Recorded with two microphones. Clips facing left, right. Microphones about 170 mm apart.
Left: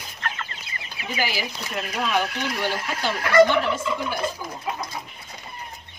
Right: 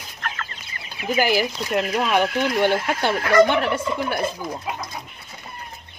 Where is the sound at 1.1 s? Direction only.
50° right (ahead or behind).